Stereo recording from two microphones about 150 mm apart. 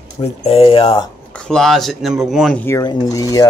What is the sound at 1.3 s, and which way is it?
Speech, 5° left (ahead or behind).